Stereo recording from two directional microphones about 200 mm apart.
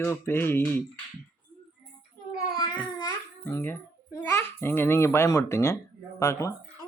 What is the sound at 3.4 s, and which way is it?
A child's voice, 10° left (ahead or behind).